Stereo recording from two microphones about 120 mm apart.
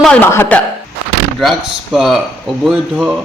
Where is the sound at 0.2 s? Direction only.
20° left (ahead or behind).